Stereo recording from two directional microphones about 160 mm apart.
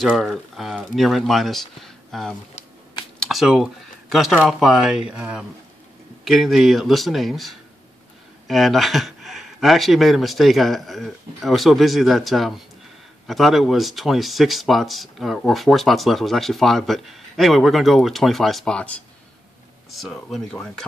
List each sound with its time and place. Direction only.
0.0 s speech: centre (ahead or behind)
2.5 s shuffling cards: 30° left (ahead or behind)
3.2 s speech: centre (ahead or behind)